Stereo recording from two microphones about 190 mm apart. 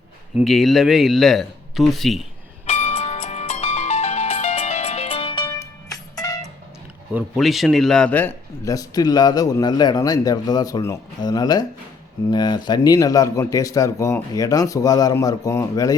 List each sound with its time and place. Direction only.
0.3 s speech: centre (ahead or behind)
2.6 s music: 35° left (ahead or behind); by 6.5 s 20° left (ahead or behind)
7.1 s a man's voice: 5° right (ahead or behind); by 16.0 s 20° left (ahead or behind)